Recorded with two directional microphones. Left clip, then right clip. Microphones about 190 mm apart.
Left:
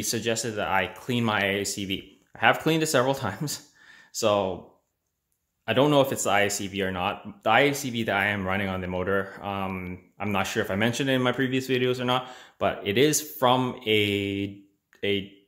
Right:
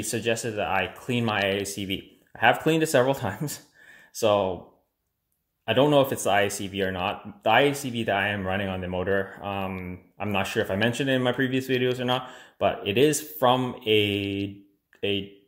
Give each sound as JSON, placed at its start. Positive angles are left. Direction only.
{"t": 0.0, "sound": "speech", "side_deg": 15}
{"t": 5.7, "sound": "speech", "side_deg": 15}